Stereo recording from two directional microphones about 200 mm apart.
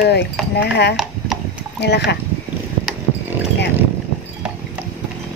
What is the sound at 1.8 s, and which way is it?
Speech, 55° left (ahead or behind).